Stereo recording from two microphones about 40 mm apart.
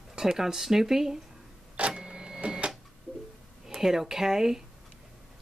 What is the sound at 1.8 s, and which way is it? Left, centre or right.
Printer, right.